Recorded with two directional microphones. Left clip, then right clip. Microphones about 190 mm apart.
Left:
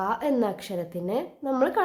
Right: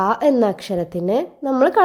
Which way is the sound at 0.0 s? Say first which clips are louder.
Right 9 dB; 40° right (ahead or behind).